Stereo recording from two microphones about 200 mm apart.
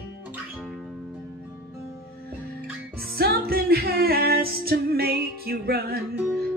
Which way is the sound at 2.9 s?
50° right (ahead or behind).